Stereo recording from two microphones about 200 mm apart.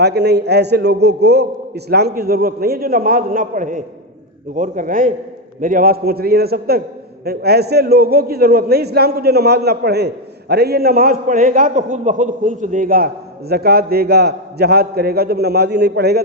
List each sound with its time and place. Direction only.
0.0 s a man's voice: 55° right (ahead or behind)